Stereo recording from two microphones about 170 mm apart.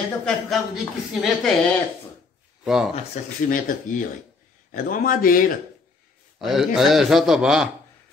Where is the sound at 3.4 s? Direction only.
50° left (ahead or behind).